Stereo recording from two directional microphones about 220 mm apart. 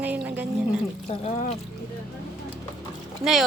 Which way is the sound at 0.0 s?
5° right (ahead or behind).